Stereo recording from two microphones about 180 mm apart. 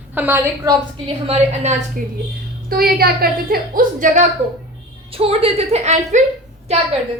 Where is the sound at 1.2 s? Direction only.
35° right (ahead or behind).